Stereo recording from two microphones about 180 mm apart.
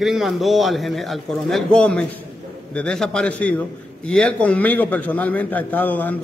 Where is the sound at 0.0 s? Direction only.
Centre (ahead or behind).